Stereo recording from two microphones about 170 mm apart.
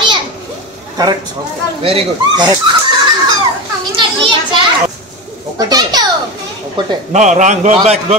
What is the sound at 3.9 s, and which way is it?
Children playing, 30° right (ahead or behind).